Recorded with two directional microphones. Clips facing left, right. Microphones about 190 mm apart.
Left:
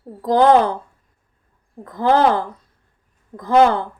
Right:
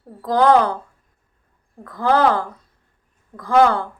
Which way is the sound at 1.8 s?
25° left (ahead or behind).